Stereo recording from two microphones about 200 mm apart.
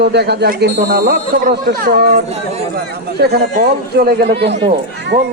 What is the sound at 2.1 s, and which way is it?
Speech, 35° right (ahead or behind).